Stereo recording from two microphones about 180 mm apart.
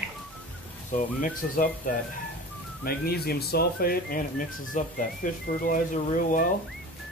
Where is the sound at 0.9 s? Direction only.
45° left (ahead or behind).